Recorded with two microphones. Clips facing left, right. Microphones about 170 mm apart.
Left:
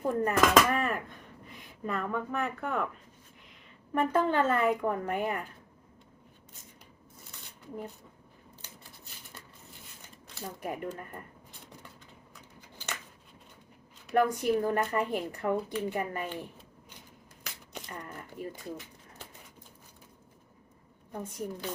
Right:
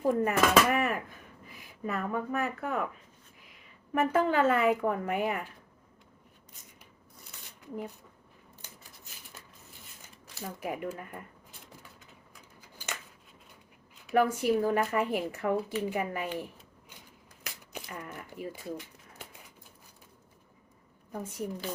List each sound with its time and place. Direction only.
0.0 s speech: 5° right (ahead or behind)
3.9 s speech: 10° right (ahead or behind)
10.3 s speech: 5° right (ahead or behind)
14.1 s speech: 5° right (ahead or behind)
17.4 s shuffling cards: 5° right (ahead or behind)
21.1 s speech: 5° right (ahead or behind)